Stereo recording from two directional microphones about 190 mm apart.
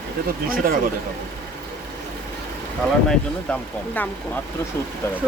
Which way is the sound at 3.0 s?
5° left (ahead or behind).